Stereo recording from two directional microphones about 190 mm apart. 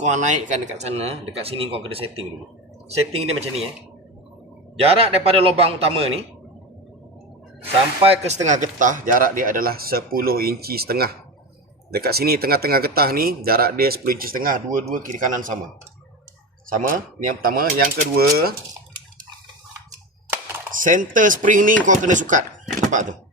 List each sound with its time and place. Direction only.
0.0 s a man's voice: 40° right (ahead or behind)
4.8 s a man's voice: 30° right (ahead or behind)
8.0 s speech: 35° right (ahead or behind)
16.6 s speech: 45° right (ahead or behind)
20.7 s a man's voice: 45° right (ahead or behind)